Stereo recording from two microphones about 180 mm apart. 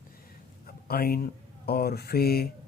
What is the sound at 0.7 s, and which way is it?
Speech, 55° left (ahead or behind).